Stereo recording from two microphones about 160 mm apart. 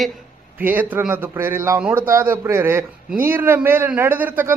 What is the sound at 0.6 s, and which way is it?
A man's voice, 10° right (ahead or behind).